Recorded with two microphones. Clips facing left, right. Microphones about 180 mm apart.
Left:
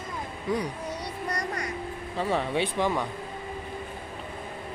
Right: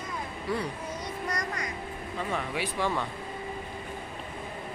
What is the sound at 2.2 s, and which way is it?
Speech, 30° left (ahead or behind).